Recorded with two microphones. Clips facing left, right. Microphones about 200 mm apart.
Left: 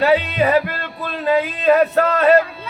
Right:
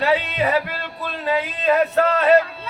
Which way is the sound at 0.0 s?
40° left (ahead or behind).